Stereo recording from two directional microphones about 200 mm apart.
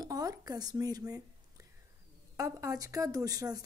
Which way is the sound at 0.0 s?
20° right (ahead or behind).